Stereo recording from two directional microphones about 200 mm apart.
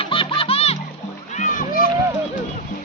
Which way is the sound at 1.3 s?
40° left (ahead or behind).